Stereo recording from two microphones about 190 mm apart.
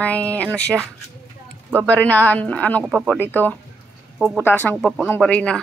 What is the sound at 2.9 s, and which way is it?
Speech, 5° right (ahead or behind).